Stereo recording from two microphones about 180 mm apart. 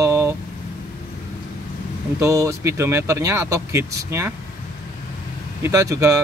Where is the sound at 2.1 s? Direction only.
15° right (ahead or behind).